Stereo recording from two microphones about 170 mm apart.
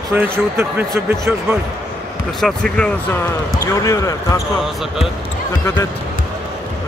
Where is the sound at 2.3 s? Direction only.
5° left (ahead or behind).